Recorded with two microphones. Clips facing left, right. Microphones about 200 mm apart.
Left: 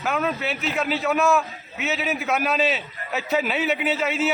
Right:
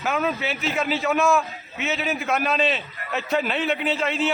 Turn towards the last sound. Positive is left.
turn(degrees=5)  # may be behind; listen again after turning